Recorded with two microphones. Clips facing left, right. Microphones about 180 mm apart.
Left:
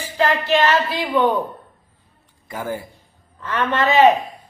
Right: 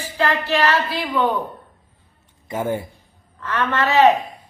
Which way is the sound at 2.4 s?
25° right (ahead or behind).